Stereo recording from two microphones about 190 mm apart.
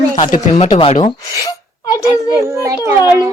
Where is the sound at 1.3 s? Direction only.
15° left (ahead or behind).